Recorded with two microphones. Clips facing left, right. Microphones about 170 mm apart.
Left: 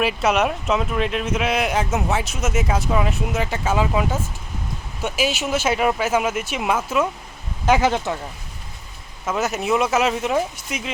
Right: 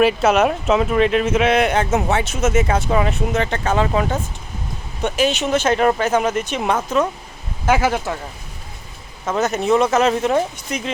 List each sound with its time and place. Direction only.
0.0 s speech: centre (ahead or behind)
7.6 s speech: 20° left (ahead or behind)
9.4 s speech: 5° left (ahead or behind)